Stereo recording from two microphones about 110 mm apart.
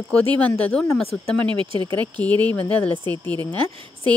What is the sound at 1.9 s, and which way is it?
Speech, 15° left (ahead or behind).